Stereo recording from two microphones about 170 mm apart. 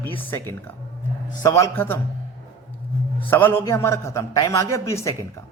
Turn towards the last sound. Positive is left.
turn(degrees=15)  # may be behind; listen again after turning